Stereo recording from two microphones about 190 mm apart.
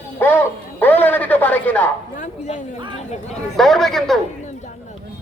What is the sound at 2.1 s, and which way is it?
Speech, 40° left (ahead or behind).